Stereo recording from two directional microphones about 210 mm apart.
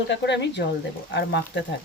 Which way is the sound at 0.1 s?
55° left (ahead or behind).